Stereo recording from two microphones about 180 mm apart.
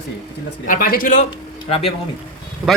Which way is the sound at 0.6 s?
50° left (ahead or behind).